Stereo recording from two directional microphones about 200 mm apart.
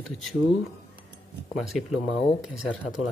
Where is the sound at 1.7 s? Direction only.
Centre (ahead or behind).